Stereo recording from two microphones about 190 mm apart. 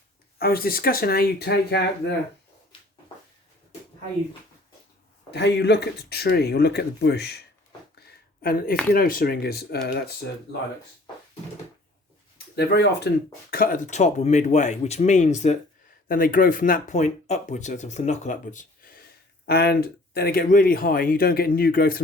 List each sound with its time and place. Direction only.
0.3 s speech: 50° left (ahead or behind)
5.3 s speech: 65° left (ahead or behind)
7.9 s a sound: 55° left (ahead or behind)
8.9 s speech: 50° left (ahead or behind)
12.5 s speech: 60° left (ahead or behind)